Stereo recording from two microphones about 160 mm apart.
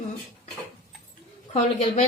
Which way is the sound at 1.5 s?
45° left (ahead or behind).